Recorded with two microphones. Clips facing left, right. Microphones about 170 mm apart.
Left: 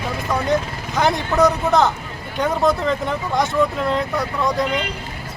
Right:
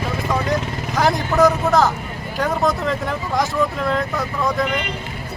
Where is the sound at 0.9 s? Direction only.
Centre (ahead or behind).